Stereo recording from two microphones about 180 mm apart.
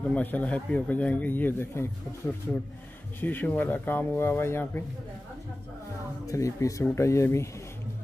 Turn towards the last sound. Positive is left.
turn(degrees=15)  # may be behind; listen again after turning